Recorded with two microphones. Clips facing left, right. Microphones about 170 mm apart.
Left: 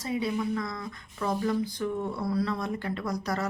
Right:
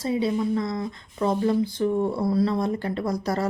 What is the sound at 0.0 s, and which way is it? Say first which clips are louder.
Speech: right 5 dB; 30° right (ahead or behind).